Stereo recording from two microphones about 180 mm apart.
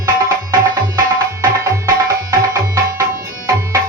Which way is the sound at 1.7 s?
15° right (ahead or behind).